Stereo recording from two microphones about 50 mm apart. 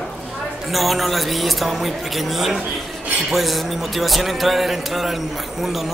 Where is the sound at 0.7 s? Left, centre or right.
Centre.